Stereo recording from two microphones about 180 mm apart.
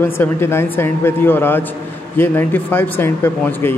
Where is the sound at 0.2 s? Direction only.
15° left (ahead or behind).